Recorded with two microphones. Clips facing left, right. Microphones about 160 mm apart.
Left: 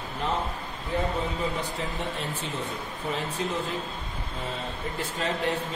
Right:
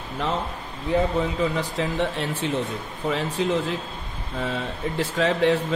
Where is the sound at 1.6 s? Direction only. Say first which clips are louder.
Right 7 dB; 85° right.